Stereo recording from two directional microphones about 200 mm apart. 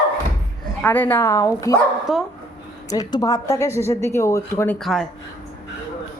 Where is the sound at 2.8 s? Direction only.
20° left (ahead or behind).